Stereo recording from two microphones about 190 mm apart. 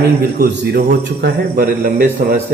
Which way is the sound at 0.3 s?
55° right (ahead or behind).